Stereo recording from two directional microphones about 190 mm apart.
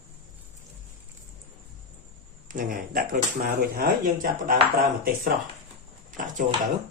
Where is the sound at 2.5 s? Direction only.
45° right (ahead or behind).